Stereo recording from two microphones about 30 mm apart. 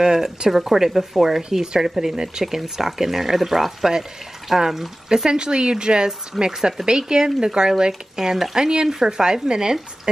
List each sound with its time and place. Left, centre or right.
0.0 s speech: centre
5.3 s speech: right
6.3 s speech: centre
6.9 s speech: right